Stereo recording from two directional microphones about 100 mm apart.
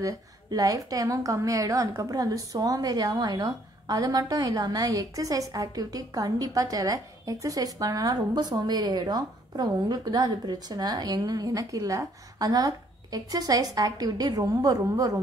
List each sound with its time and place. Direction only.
0.0 s a woman's voice: 35° right (ahead or behind)